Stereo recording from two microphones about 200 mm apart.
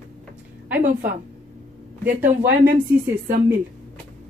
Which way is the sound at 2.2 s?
40° right (ahead or behind).